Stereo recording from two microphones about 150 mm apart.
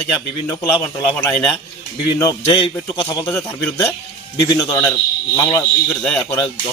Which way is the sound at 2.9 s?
25° left (ahead or behind).